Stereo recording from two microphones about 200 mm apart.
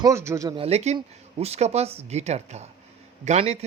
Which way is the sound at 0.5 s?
30° right (ahead or behind).